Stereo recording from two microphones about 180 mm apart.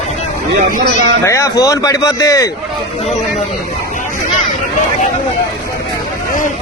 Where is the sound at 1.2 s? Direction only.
15° left (ahead or behind).